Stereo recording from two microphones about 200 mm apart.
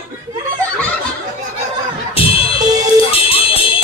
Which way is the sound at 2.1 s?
30° left (ahead or behind).